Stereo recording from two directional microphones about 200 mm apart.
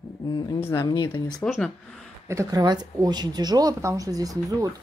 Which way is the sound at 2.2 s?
15° right (ahead or behind).